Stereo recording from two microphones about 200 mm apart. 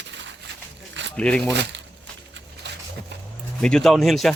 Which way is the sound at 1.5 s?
60° right (ahead or behind).